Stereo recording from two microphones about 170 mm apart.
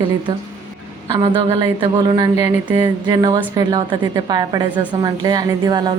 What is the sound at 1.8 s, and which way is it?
A woman's voice, 30° right (ahead or behind).